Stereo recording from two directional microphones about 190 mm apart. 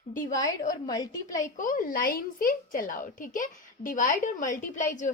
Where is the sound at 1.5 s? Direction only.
45° left (ahead or behind).